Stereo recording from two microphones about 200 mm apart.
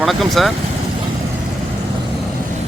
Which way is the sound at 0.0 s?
Centre (ahead or behind).